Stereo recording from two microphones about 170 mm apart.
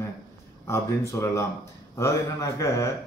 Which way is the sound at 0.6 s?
15° left (ahead or behind).